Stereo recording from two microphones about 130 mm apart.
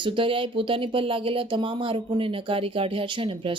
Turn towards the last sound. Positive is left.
turn(degrees=-40)  # may be behind; listen again after turning